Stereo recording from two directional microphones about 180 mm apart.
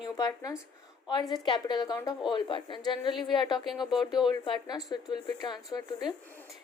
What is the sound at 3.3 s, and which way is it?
A woman's voice, 25° left (ahead or behind).